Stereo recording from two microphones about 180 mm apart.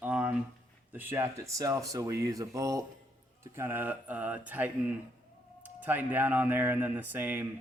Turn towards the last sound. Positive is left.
turn(degrees=-10)  # may be behind; listen again after turning